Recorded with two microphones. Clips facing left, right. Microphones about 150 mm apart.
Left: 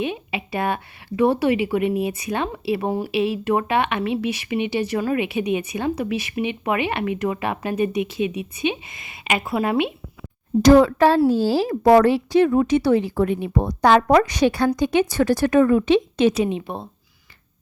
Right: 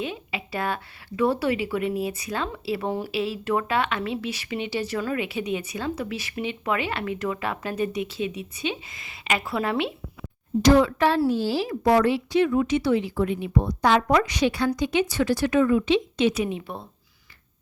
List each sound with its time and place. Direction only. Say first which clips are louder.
0.0 s a woman's voice: left 5 dB; 20° left (ahead or behind)
10.6 s speech: left 5 dB; 40° left (ahead or behind)
16.4 s a woman's voice: left 5 dB; 25° left (ahead or behind)